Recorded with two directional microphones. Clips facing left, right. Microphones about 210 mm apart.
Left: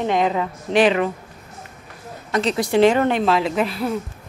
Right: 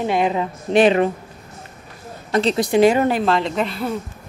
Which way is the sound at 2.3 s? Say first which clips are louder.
Right 3 dB; 30° right (ahead or behind).